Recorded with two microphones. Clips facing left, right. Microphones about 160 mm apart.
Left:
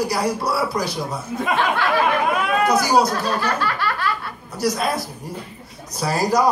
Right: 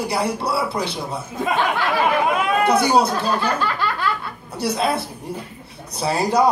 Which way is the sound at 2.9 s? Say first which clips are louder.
Even; 30° right (ahead or behind).